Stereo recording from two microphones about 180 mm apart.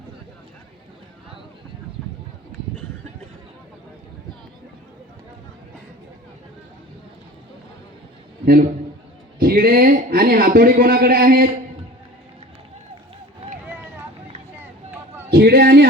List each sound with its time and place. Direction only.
9.4 s a man's voice: 55° right (ahead or behind)
13.4 s run: 35° right (ahead or behind)
15.3 s a sound: 60° right (ahead or behind)